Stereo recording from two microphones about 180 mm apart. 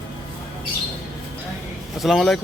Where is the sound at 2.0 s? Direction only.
Centre (ahead or behind).